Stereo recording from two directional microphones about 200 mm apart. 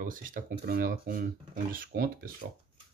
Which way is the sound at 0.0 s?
45° right (ahead or behind).